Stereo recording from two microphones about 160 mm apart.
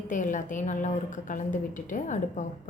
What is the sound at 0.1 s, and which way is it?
A woman's voice, 50° left (ahead or behind).